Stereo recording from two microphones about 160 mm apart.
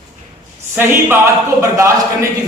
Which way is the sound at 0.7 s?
15° right (ahead or behind).